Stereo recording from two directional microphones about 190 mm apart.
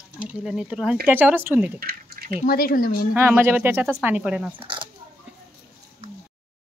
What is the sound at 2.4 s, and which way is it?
Speech, 50° left (ahead or behind).